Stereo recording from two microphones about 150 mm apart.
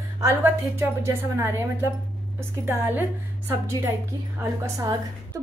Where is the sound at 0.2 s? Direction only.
20° right (ahead or behind).